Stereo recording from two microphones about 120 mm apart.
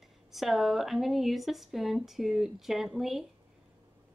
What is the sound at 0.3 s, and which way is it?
A woman's voice, centre (ahead or behind).